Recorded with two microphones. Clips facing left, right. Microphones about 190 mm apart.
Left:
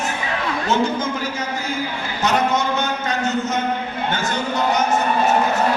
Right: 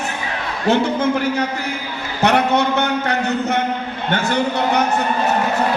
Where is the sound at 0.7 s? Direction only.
65° right (ahead or behind).